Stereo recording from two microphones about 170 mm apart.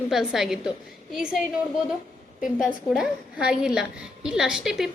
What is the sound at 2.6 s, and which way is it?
Speech, 5° right (ahead or behind).